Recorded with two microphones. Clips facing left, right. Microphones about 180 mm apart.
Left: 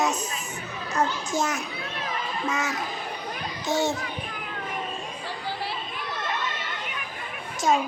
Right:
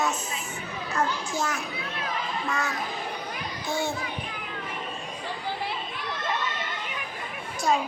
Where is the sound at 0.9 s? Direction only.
20° left (ahead or behind).